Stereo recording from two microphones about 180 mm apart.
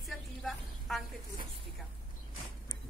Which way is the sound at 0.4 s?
Centre (ahead or behind).